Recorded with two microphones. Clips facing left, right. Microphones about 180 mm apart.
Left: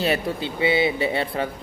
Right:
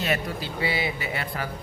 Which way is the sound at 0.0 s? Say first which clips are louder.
Left 4 dB; 30° left (ahead or behind).